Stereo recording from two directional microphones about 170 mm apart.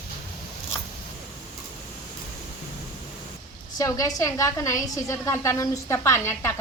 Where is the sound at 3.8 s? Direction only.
20° left (ahead or behind).